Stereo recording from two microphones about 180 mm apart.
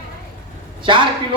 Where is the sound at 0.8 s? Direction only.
25° right (ahead or behind).